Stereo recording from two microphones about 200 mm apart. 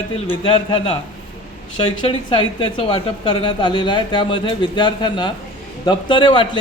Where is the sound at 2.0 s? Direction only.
25° left (ahead or behind).